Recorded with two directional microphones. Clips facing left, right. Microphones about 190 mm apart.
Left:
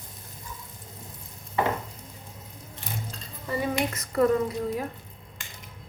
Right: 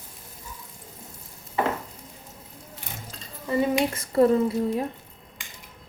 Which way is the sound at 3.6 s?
30° right (ahead or behind).